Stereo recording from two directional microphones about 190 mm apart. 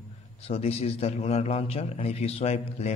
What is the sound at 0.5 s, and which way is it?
A man's voice, 30° left (ahead or behind).